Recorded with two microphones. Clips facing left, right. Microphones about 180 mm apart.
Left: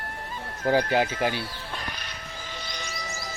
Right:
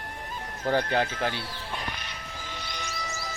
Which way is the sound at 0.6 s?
5° left (ahead or behind).